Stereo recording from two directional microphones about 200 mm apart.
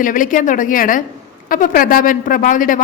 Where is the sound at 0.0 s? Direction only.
40° left (ahead or behind).